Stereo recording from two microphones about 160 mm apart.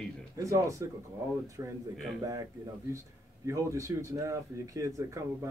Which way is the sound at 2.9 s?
20° right (ahead or behind).